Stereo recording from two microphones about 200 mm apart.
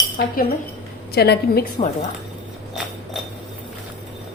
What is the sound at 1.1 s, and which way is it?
Speech, 55° left (ahead or behind).